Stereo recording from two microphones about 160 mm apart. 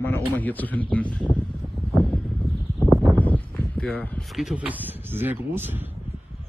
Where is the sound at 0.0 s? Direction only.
10° left (ahead or behind).